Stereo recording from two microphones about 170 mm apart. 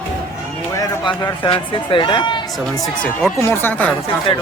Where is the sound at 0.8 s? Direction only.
25° left (ahead or behind).